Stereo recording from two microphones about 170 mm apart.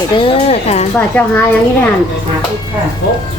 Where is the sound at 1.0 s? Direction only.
10° left (ahead or behind).